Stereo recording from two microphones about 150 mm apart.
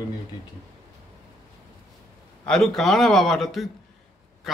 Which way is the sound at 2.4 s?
5° left (ahead or behind).